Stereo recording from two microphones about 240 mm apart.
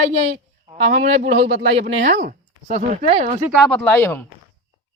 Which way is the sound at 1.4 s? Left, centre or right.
Right.